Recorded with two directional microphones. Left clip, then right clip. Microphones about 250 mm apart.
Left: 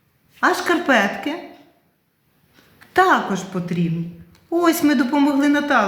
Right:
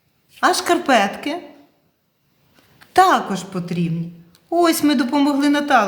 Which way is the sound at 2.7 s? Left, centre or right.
Right.